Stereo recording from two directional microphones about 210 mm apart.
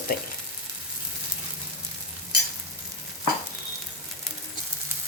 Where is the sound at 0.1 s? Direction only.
45° left (ahead or behind).